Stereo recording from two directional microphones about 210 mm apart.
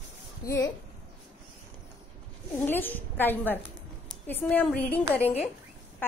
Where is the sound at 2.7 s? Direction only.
10° left (ahead or behind).